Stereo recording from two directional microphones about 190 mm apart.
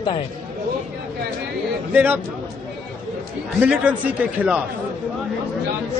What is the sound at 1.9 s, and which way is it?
Speech, 10° right (ahead or behind).